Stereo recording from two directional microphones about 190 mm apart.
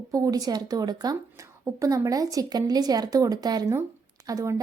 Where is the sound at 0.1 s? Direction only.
20° right (ahead or behind).